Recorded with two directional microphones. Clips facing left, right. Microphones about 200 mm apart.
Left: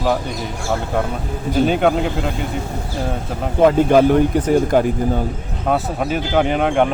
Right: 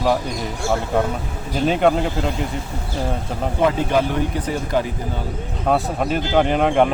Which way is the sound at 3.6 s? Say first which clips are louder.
Left 7 dB; 50° left (ahead or behind).